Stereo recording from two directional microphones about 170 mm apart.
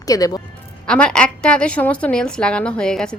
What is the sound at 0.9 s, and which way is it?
A woman's voice, 5° left (ahead or behind).